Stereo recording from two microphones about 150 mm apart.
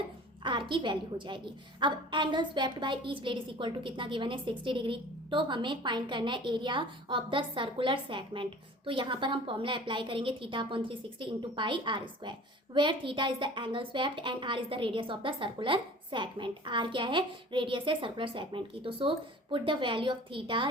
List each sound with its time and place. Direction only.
0.4 s a woman's voice: 30° right (ahead or behind)